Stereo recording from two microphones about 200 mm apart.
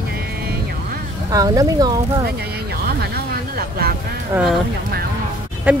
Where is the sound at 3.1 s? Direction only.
50° right (ahead or behind).